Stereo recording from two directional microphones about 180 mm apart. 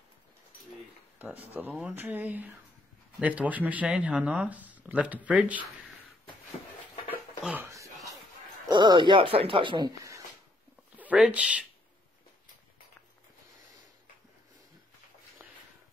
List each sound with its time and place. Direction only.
1.2 s speech: 10° right (ahead or behind)
7.4 s a sound: 10° right (ahead or behind)
8.6 s speech: 25° right (ahead or behind)
11.0 s speech: 5° right (ahead or behind)